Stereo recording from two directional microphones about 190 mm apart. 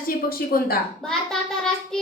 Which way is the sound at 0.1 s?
50° left (ahead or behind).